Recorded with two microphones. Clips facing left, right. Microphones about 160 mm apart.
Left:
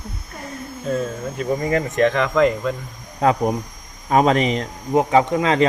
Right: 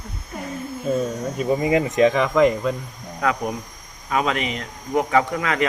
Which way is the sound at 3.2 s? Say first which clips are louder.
Left 5 dB; 30° left (ahead or behind).